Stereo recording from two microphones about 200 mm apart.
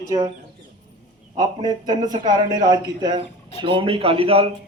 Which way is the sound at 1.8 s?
20° right (ahead or behind).